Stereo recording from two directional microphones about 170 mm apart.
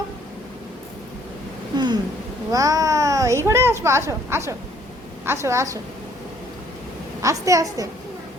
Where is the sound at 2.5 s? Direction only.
20° right (ahead or behind).